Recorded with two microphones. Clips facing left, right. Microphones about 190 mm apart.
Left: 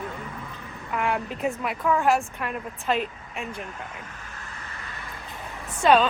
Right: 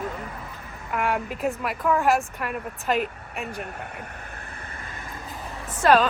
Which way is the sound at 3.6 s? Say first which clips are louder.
Right 2 dB; 65° right (ahead or behind).